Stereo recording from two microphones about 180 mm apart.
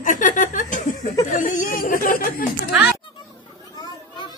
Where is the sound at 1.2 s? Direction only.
45° left (ahead or behind).